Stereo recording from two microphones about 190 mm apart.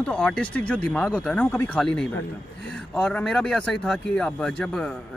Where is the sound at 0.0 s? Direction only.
5° left (ahead or behind).